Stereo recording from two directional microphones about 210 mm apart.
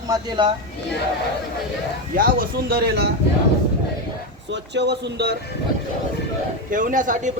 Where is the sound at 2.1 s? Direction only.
45° right (ahead or behind).